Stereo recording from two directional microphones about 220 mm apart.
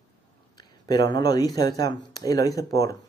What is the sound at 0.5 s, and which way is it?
Speech, 20° left (ahead or behind).